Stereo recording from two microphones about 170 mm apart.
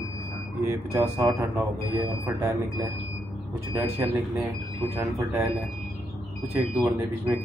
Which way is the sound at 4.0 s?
10° right (ahead or behind).